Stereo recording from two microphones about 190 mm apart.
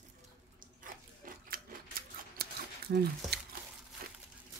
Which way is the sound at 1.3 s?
45° right (ahead or behind).